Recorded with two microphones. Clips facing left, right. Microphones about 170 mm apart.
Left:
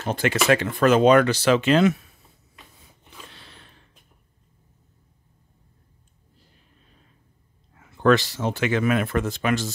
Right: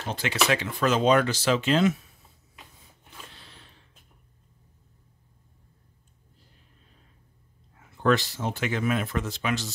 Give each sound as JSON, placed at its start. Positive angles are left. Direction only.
{"t": 0.0, "sound": "speech", "side_deg": 50}
{"t": 3.3, "sound": "a sound", "side_deg": 65}
{"t": 8.0, "sound": "speech", "side_deg": 90}